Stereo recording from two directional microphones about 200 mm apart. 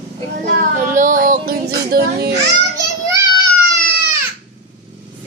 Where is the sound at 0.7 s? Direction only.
40° right (ahead or behind).